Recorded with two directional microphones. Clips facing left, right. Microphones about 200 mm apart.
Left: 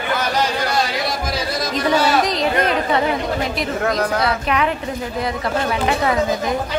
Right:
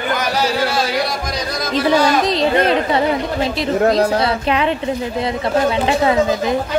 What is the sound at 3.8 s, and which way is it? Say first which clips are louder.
Speech: right 5 dB; 30° right (ahead or behind).